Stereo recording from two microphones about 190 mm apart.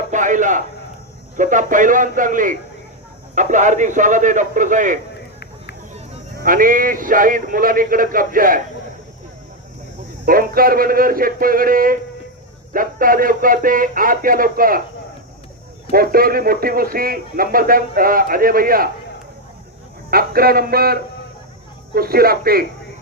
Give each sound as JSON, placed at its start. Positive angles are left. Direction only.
{"t": 0.1, "sound": "a sound", "side_deg": -40}
{"t": 1.4, "sound": "a man's voice", "side_deg": -45}
{"t": 6.3, "sound": "speech", "side_deg": -50}
{"t": 10.2, "sound": "speech", "side_deg": -50}
{"t": 15.9, "sound": "speech", "side_deg": -50}
{"t": 20.1, "sound": "speech", "side_deg": -50}